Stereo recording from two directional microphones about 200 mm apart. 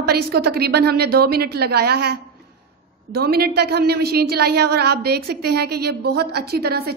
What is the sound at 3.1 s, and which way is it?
A woman's voice, 50° right (ahead or behind).